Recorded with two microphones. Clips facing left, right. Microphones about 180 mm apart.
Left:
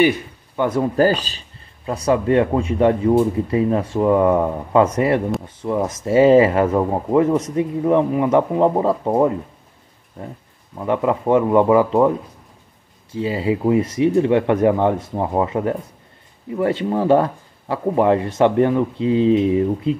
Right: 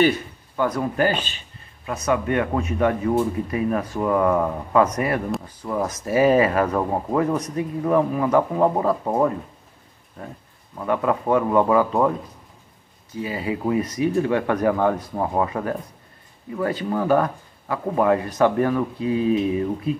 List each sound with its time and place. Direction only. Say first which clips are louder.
0.6 s speech: left 5 dB; 30° left (ahead or behind)
10.8 s speech: left 3 dB; 20° left (ahead or behind)
13.1 s speech: left 6 dB; 25° left (ahead or behind)